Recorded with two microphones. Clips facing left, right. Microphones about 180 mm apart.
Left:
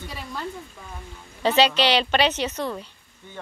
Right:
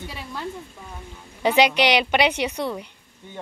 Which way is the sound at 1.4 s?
15° right (ahead or behind).